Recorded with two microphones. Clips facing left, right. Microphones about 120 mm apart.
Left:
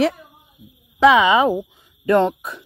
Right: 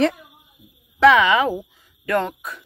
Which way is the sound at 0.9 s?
15° left (ahead or behind).